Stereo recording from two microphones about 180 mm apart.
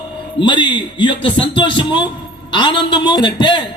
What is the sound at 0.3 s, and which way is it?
A man's voice, 25° left (ahead or behind).